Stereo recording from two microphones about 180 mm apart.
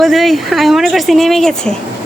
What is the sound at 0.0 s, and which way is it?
Speech, centre (ahead or behind).